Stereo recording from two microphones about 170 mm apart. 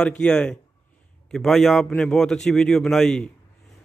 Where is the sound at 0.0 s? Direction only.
5° left (ahead or behind).